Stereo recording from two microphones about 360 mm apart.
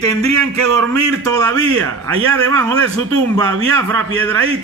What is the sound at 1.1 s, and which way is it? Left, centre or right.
A man's voice, right.